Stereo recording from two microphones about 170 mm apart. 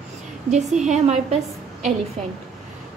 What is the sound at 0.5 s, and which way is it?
Speech, 45° right (ahead or behind).